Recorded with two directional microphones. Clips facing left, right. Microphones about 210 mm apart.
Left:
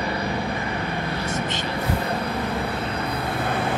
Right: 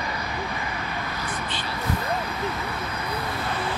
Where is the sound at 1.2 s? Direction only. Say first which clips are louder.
Left 5 dB; 45° left (ahead or behind).